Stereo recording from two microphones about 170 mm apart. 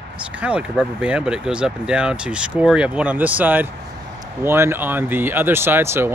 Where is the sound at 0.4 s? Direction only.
5° right (ahead or behind).